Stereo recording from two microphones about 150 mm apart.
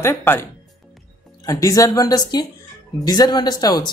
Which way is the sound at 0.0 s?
15° left (ahead or behind).